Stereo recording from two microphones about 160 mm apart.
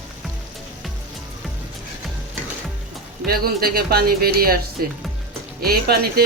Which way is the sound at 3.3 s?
70° right (ahead or behind).